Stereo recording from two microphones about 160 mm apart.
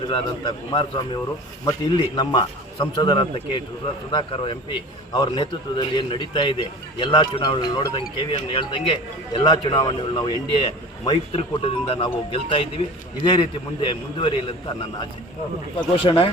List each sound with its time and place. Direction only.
0.1 s a man's voice: 30° left (ahead or behind)
16.0 s speech: 35° left (ahead or behind)